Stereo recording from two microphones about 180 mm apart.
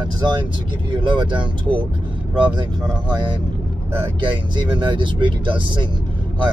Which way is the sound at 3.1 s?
25° right (ahead or behind).